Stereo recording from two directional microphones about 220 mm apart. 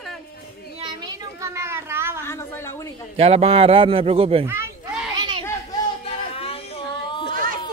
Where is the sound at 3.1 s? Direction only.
25° right (ahead or behind).